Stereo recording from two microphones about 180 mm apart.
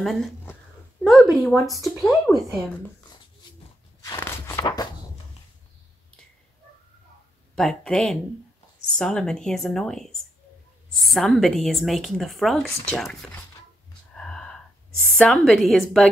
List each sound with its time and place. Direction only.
0.0 s a woman's voice: centre (ahead or behind)
4.0 s crunch: 15° left (ahead or behind)
7.5 s a woman's voice: 5° left (ahead or behind)
14.1 s a sound: 5° left (ahead or behind)